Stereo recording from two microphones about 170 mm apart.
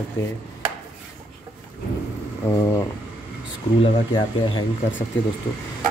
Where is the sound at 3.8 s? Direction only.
25° left (ahead or behind).